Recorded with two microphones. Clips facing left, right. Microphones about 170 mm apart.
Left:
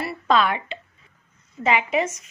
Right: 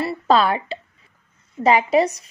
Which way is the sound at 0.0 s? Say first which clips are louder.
Right 3 dB; 30° right (ahead or behind).